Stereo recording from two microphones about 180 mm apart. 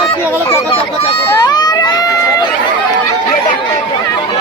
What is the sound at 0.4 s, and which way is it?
Chatter, 35° left (ahead or behind).